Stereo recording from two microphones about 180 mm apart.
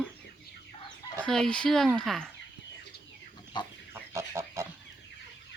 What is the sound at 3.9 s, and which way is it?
Pig, 15° right (ahead or behind).